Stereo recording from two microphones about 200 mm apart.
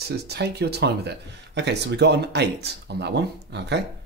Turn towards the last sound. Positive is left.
turn(degrees=-55)  # may be behind; listen again after turning